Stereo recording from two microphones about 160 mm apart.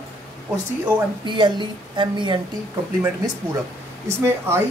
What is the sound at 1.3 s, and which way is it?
Speech, 30° right (ahead or behind).